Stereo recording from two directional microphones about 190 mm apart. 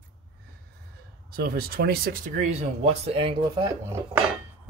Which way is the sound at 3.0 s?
30° right (ahead or behind).